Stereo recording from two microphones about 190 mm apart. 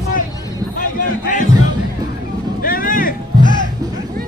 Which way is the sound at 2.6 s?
45° left (ahead or behind).